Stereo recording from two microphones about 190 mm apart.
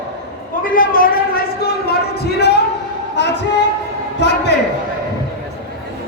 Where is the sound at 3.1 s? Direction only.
65° left (ahead or behind).